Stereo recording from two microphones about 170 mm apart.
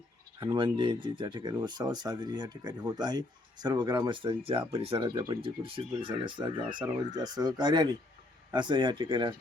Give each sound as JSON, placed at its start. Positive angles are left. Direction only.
{"t": 0.3, "sound": "speech", "side_deg": -25}